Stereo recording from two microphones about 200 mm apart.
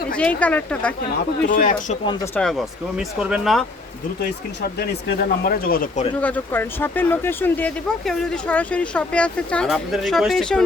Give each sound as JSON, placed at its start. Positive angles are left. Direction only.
{"t": 0.1, "sound": "speech", "side_deg": 5}
{"t": 1.5, "sound": "speech", "side_deg": 40}
{"t": 2.0, "sound": "speech", "side_deg": 15}
{"t": 2.4, "sound": "speech", "side_deg": 0}
{"t": 4.2, "sound": "speech", "side_deg": 50}
{"t": 6.2, "sound": "speech", "side_deg": 10}